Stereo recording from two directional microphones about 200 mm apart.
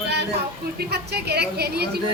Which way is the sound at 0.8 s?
55° right (ahead or behind).